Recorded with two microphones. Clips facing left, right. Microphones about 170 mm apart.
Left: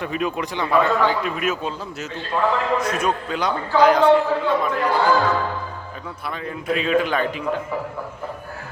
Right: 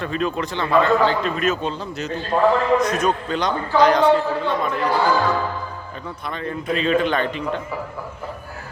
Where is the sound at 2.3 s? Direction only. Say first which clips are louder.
Right 4 dB; 35° right (ahead or behind).